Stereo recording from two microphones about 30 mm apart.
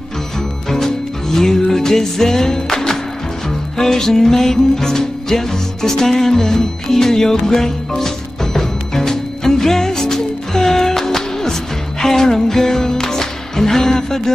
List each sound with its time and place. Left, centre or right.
0.7 s music: centre